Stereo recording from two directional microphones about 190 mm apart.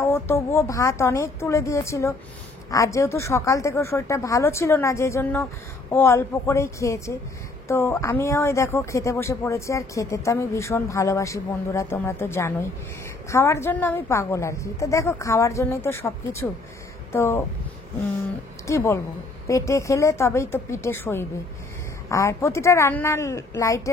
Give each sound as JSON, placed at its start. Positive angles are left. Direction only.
{"t": 0.0, "sound": "speech", "side_deg": 15}
{"t": 18.7, "sound": "speech", "side_deg": 15}